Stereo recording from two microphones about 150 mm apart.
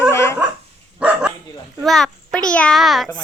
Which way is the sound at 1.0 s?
5° right (ahead or behind).